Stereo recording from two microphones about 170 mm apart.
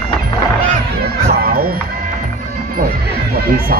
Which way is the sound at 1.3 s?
60° right (ahead or behind).